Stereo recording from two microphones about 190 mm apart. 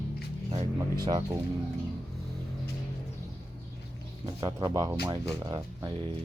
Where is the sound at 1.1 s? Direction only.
20° right (ahead or behind).